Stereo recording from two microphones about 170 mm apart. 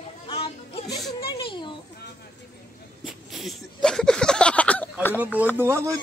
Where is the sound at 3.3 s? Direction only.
Centre (ahead or behind).